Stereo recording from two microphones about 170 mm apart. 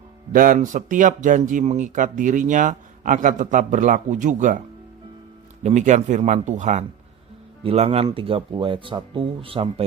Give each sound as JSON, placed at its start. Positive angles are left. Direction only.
{"t": 0.3, "sound": "speech", "side_deg": -50}
{"t": 5.6, "sound": "speech", "side_deg": -45}
{"t": 7.6, "sound": "speech", "side_deg": -35}